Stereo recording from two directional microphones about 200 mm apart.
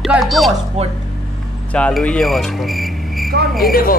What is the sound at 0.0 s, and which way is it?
Music, centre (ahead or behind).